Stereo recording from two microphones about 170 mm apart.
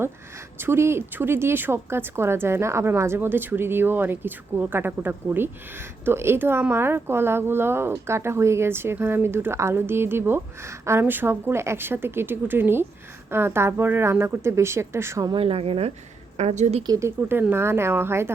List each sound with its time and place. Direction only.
0.6 s a woman's voice: 15° right (ahead or behind)
15.4 s a woman's voice: 35° right (ahead or behind)
16.8 s speech: 20° right (ahead or behind)
17.2 s a woman's voice: 10° right (ahead or behind)